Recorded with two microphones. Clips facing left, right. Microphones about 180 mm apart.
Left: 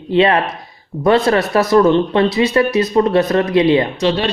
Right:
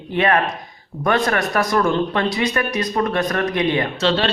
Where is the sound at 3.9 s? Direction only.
15° left (ahead or behind).